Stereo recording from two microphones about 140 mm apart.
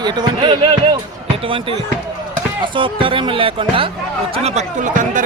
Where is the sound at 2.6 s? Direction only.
35° right (ahead or behind).